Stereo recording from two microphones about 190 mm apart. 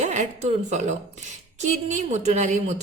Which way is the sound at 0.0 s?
40° right (ahead or behind).